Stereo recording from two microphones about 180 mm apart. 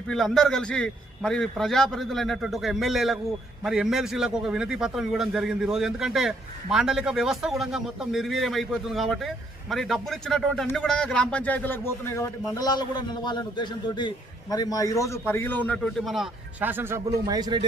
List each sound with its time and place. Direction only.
0.1 s a man's voice: centre (ahead or behind)
17.3 s speech: 25° right (ahead or behind)